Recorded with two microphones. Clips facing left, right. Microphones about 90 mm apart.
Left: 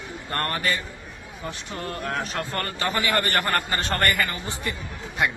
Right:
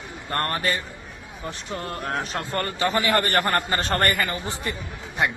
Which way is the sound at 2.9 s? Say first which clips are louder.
Right 1 dB; 30° right (ahead or behind).